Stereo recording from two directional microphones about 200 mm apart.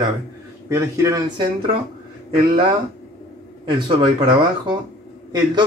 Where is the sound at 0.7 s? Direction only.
15° right (ahead or behind).